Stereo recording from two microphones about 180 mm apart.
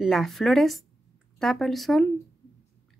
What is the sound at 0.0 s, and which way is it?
Speech, centre (ahead or behind).